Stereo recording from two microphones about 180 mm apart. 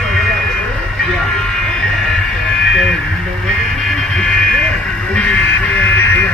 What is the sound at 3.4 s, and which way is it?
Vehicle, 5° left (ahead or behind).